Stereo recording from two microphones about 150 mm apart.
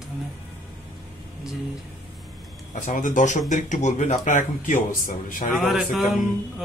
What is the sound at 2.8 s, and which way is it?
Speech, 60° left (ahead or behind).